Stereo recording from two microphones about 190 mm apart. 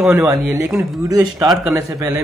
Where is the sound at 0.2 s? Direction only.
15° right (ahead or behind).